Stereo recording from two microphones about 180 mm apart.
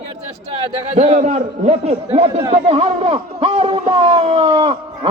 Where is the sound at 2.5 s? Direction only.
35° right (ahead or behind).